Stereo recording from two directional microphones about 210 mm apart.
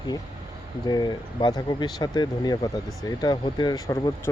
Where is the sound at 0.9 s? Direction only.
20° left (ahead or behind).